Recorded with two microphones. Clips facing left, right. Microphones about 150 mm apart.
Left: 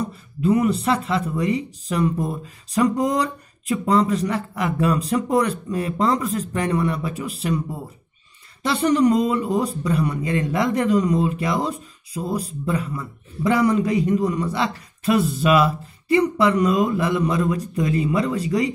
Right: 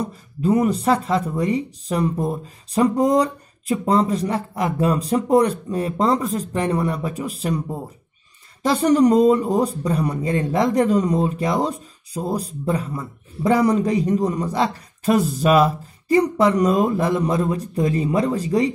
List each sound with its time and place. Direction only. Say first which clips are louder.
0.0 s speech: even; 35° right (ahead or behind)